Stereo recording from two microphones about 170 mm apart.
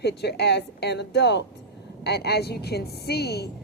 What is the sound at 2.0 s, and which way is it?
A woman's voice, 75° left (ahead or behind).